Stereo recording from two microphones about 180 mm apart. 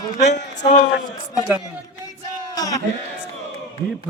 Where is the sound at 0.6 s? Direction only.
45° left (ahead or behind).